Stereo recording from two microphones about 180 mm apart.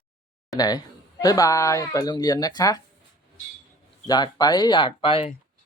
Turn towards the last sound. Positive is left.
turn(degrees=30)  # may be behind; listen again after turning